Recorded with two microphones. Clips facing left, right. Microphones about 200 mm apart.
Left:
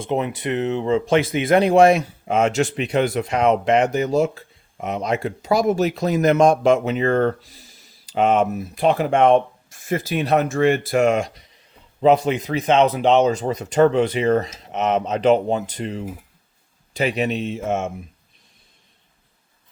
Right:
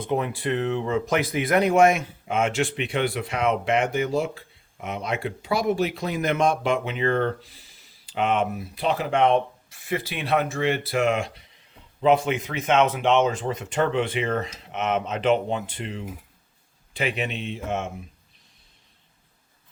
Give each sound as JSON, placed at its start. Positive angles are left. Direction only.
{"t": 0.0, "sound": "speech", "side_deg": 20}